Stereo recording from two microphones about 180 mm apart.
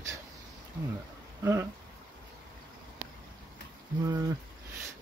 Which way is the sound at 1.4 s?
15° right (ahead or behind).